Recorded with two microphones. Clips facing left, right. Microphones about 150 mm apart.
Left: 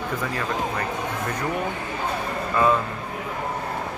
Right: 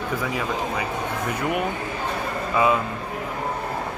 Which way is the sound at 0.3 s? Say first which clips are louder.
Right 1 dB; 5° right (ahead or behind).